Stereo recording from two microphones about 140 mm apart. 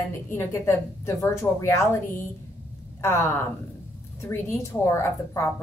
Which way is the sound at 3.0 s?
15° left (ahead or behind).